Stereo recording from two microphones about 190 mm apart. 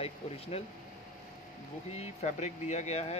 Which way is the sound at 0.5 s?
30° left (ahead or behind).